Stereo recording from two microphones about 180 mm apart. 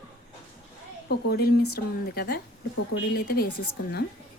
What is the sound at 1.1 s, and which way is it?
A woman's voice, 60° left (ahead or behind).